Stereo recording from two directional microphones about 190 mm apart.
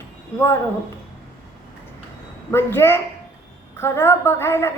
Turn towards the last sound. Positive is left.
turn(degrees=15)  # may be behind; listen again after turning